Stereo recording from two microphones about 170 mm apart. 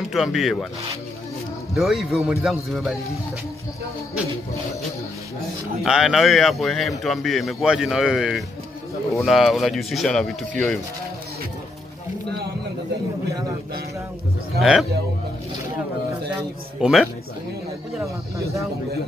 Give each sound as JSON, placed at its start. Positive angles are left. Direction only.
{"t": 0.1, "sound": "a man's voice", "side_deg": 0}
{"t": 1.8, "sound": "a man's voice", "side_deg": 0}
{"t": 5.9, "sound": "a man's voice", "side_deg": -5}
{"t": 14.6, "sound": "a man's voice", "side_deg": 0}
{"t": 16.8, "sound": "a man's voice", "side_deg": 0}